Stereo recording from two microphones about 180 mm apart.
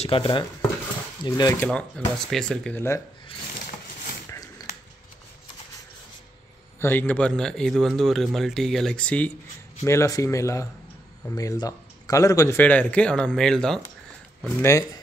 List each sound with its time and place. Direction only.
0.0 s speech: 30° left (ahead or behind); by 3.0 s 10° left (ahead or behind)
4.6 s dog: 20° left (ahead or behind)
6.8 s speech: 10° left (ahead or behind)
14.4 s speech: 15° left (ahead or behind)